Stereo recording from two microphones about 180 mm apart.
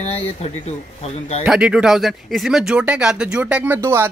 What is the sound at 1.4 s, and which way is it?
Speech, 5° right (ahead or behind).